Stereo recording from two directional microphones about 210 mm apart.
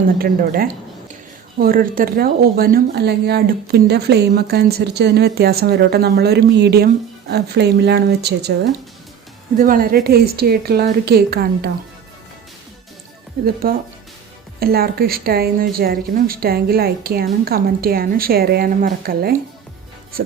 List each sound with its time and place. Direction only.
0.2 s speech: 45° right (ahead or behind)
9.6 s speech: 40° right (ahead or behind)
13.4 s speech: 45° right (ahead or behind)